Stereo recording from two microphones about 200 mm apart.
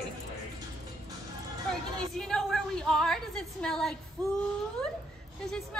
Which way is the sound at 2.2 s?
5° left (ahead or behind).